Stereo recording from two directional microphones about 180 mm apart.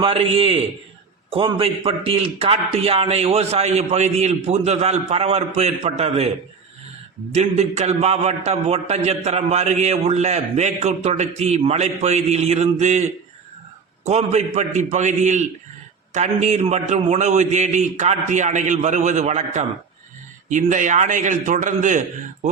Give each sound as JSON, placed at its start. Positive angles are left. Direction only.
{"t": 0.0, "sound": "a man's voice", "side_deg": -30}
{"t": 7.3, "sound": "a man's voice", "side_deg": -40}